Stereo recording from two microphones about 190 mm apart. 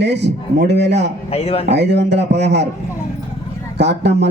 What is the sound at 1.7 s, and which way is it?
Speech, 65° right (ahead or behind).